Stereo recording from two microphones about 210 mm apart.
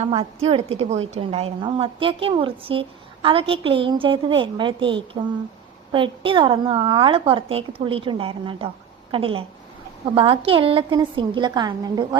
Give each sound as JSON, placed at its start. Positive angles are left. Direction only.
{"t": 0.0, "sound": "a woman's voice", "side_deg": -30}